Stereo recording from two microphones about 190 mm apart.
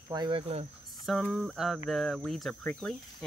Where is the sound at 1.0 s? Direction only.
Centre (ahead or behind).